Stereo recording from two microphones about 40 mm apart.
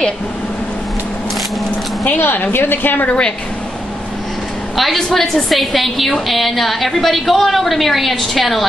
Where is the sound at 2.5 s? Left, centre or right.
Left.